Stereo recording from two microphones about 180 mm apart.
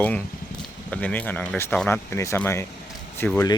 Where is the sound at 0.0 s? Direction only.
10° left (ahead or behind).